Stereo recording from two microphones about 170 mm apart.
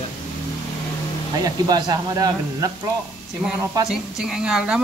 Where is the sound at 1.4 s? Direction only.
25° right (ahead or behind).